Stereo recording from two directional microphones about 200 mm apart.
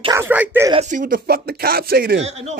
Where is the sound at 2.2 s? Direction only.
35° right (ahead or behind).